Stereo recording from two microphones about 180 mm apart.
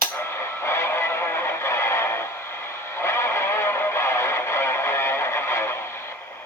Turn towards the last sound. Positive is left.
turn(degrees=15)  # may be behind; listen again after turning